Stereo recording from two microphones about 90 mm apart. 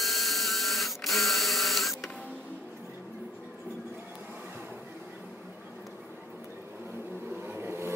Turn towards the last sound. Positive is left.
turn(degrees=-30)  # may be behind; listen again after turning